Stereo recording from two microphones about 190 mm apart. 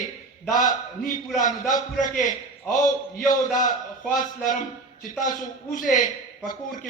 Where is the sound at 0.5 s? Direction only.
45° left (ahead or behind).